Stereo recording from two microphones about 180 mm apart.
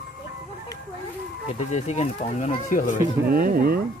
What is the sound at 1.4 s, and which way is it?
Speech, 40° left (ahead or behind).